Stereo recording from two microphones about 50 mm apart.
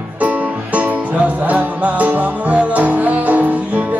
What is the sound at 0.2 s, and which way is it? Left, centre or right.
Music, right.